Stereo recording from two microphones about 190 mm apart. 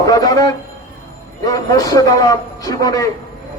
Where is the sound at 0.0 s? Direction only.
20° left (ahead or behind).